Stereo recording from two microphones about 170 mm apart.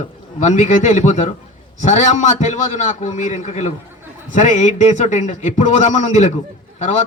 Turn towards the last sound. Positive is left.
turn(degrees=45)  # may be behind; listen again after turning